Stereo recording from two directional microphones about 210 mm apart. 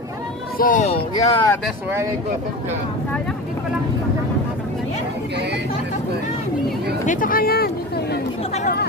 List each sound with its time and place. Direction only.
0.6 s speech: 40° left (ahead or behind)
1.1 s speech: 15° left (ahead or behind)
7.1 s speech: 40° left (ahead or behind)